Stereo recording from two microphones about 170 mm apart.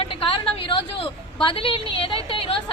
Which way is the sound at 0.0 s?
35° left (ahead or behind).